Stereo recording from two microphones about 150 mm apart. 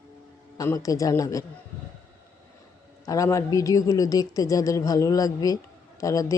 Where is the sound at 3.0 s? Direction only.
20° left (ahead or behind).